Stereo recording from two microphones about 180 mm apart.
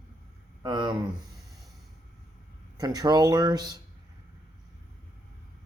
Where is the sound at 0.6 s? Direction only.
25° right (ahead or behind).